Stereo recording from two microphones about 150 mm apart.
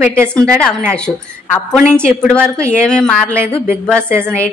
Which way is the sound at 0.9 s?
5° left (ahead or behind).